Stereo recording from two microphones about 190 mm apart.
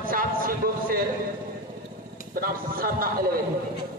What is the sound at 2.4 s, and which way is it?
A man's voice, 50° right (ahead or behind).